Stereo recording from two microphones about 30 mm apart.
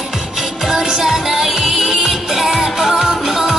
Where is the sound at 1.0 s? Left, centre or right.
Centre.